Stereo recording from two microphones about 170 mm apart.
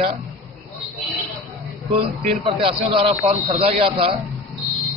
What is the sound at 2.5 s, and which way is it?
A man's voice, 30° right (ahead or behind).